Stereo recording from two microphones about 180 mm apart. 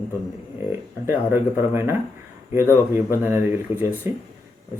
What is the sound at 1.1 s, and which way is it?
Speech, 15° right (ahead or behind).